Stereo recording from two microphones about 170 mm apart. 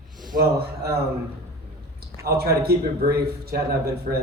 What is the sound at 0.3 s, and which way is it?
Speech, 70° right (ahead or behind).